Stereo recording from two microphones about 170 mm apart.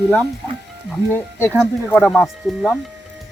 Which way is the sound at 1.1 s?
15° left (ahead or behind).